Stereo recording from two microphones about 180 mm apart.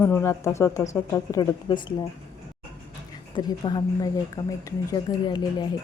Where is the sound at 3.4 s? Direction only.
25° left (ahead or behind).